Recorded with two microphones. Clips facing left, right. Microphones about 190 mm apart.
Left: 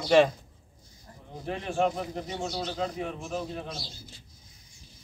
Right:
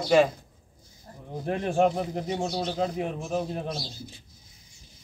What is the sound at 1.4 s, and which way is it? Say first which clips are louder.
Speech: right 5 dB; 50° right (ahead or behind).